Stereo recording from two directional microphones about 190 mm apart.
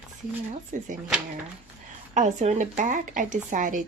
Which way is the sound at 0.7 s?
40° right (ahead or behind).